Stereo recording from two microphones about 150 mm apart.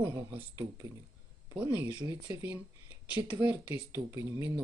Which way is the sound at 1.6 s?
10° right (ahead or behind).